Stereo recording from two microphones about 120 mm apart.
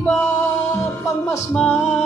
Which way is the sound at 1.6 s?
15° left (ahead or behind).